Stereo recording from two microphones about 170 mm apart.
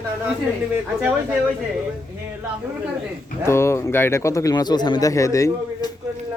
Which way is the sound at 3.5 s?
15° left (ahead or behind).